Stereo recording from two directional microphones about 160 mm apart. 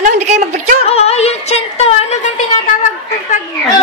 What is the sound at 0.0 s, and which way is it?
Speech, 45° right (ahead or behind).